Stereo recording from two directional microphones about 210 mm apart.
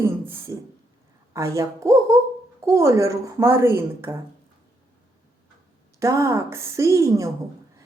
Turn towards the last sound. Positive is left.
turn(degrees=-15)  # may be behind; listen again after turning